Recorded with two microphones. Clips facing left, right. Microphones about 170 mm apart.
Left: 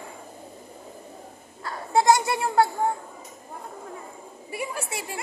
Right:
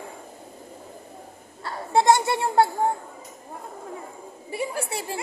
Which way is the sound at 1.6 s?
25° right (ahead or behind).